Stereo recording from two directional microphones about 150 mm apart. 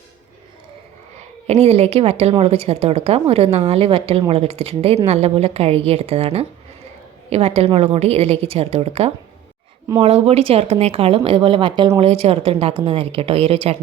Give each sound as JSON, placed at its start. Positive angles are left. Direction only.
{"t": 1.5, "sound": "a woman's voice", "side_deg": -45}